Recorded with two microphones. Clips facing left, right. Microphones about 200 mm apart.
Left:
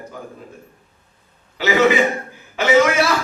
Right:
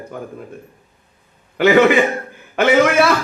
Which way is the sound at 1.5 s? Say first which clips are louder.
Right 4 dB; 55° right (ahead or behind).